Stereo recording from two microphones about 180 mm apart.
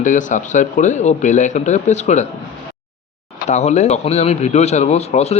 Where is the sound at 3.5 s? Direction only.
40° left (ahead or behind).